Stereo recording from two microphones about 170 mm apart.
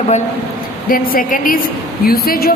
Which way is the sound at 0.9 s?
55° left (ahead or behind).